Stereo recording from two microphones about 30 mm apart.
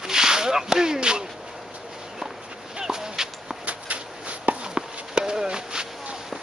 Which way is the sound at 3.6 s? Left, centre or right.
Right.